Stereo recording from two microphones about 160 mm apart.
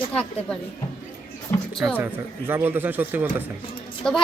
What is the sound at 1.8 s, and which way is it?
Speech, 10° right (ahead or behind).